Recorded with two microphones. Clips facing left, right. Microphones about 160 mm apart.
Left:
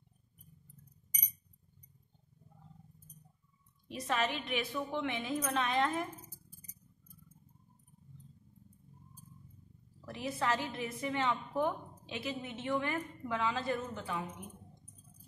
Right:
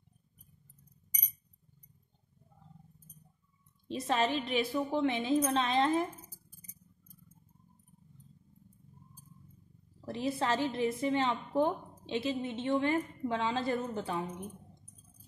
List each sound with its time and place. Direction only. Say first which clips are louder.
3.8 s a woman's voice: right 4 dB; 30° right (ahead or behind)
10.0 s a woman's voice: right 3 dB; 30° right (ahead or behind)